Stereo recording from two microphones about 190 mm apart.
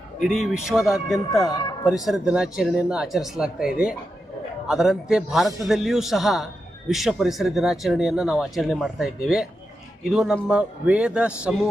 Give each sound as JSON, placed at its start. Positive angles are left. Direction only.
{"t": 0.2, "sound": "a man's voice", "side_deg": 0}
{"t": 1.5, "sound": "a sound", "side_deg": 20}
{"t": 2.0, "sound": "a man's voice", "side_deg": 0}
{"t": 4.7, "sound": "a man's voice", "side_deg": 0}